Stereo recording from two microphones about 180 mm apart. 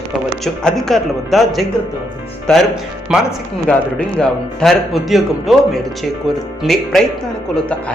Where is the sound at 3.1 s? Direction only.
5° right (ahead or behind).